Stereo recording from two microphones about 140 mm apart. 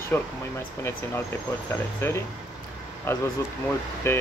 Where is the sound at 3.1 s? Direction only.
20° left (ahead or behind).